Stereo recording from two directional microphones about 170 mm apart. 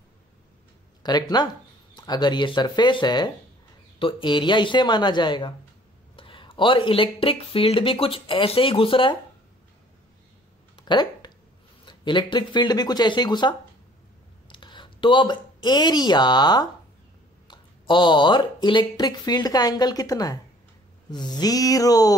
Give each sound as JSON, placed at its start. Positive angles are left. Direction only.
{"t": 1.0, "sound": "speech", "side_deg": 25}
{"t": 10.8, "sound": "a sound", "side_deg": 25}
{"t": 11.8, "sound": "speech", "side_deg": 25}